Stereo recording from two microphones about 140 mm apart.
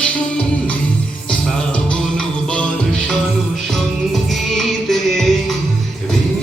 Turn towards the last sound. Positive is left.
turn(degrees=0)  # may be behind; listen again after turning